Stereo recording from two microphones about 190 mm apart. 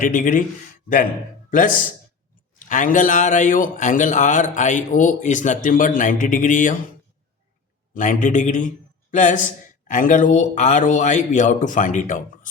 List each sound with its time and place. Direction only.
0.0 s a man's voice: 45° left (ahead or behind)
1.5 s a man's voice: 45° left (ahead or behind)
7.9 s a man's voice: 40° left (ahead or behind)